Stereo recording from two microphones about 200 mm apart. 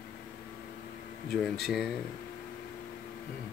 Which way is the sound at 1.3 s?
Centre (ahead or behind).